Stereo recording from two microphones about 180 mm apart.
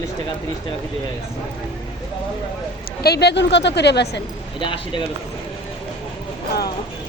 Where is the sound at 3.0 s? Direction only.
65° left (ahead or behind).